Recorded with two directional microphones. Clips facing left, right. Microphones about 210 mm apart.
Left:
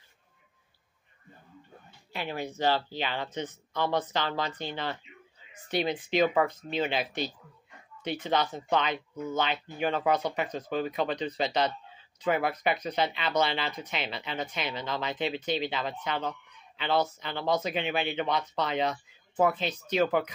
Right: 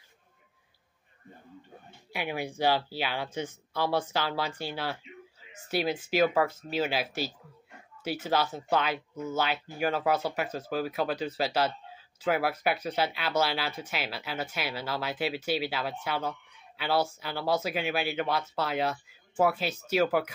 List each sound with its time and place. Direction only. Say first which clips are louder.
2.1 s speech: right 1 dB; 10° right (ahead or behind)